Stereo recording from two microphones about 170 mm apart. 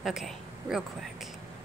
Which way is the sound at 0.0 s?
Centre (ahead or behind).